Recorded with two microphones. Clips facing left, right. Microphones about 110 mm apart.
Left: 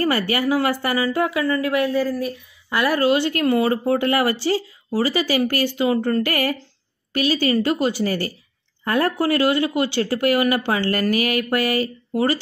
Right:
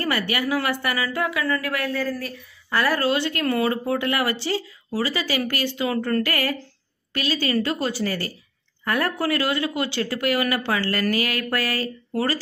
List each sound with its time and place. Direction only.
0.0 s a woman's voice: 30° left (ahead or behind)